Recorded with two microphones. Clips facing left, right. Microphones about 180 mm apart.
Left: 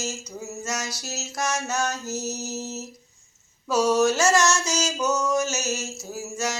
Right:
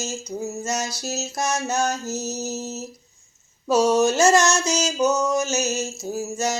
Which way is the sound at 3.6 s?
30° right (ahead or behind).